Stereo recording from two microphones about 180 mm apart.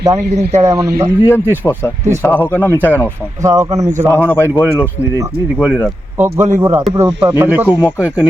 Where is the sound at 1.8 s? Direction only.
10° left (ahead or behind).